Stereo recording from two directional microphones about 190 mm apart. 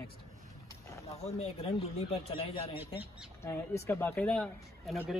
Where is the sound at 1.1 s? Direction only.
35° left (ahead or behind).